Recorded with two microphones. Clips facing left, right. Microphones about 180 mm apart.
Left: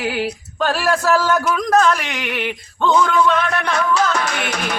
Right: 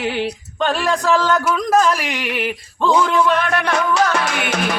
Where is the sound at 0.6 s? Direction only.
5° left (ahead or behind).